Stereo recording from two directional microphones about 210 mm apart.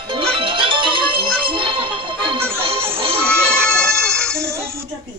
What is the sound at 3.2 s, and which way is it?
Music, 5° left (ahead or behind).